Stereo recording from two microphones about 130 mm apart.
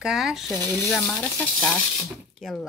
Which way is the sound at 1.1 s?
10° left (ahead or behind).